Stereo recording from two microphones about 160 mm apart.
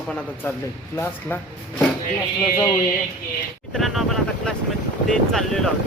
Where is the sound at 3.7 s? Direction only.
Centre (ahead or behind).